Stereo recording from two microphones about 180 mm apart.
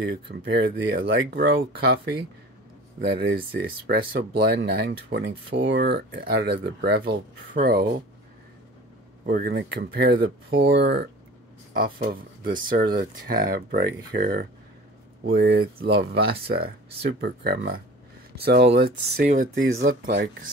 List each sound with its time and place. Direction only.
0.0 s speech: 65° right (ahead or behind)
1.0 s speech: 75° right (ahead or behind)
3.5 s speech: 55° right (ahead or behind)
9.2 s speech: 60° right (ahead or behind)
10.7 s speech: 70° right (ahead or behind)
11.7 s speech: 55° right (ahead or behind)
19.2 s speech: 45° right (ahead or behind)
19.5 s speech: 90° right
19.8 s speech: 60° right (ahead or behind)